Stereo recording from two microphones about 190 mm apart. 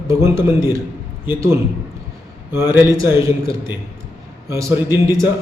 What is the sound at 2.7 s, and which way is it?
Speech, 15° right (ahead or behind).